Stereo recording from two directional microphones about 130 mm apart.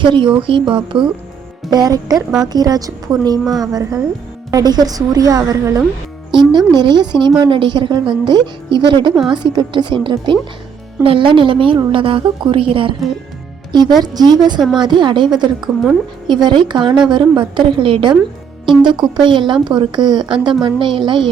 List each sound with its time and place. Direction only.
0.0 s a woman's voice: 40° right (ahead or behind)
2.1 s speech: 5° right (ahead or behind)
2.5 s speech: 30° right (ahead or behind)
6.7 s a woman's voice: 35° right (ahead or behind)
14.0 s a woman's voice: 30° right (ahead or behind)